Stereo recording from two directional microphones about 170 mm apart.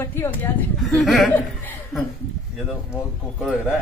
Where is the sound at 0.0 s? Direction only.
15° left (ahead or behind).